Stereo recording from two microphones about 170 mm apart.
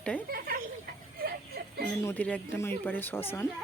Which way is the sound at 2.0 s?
10° left (ahead or behind).